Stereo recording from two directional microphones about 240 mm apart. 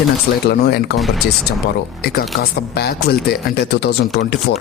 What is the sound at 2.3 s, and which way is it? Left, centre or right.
Speech, left.